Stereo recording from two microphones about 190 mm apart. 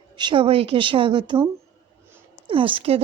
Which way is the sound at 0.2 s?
25° right (ahead or behind).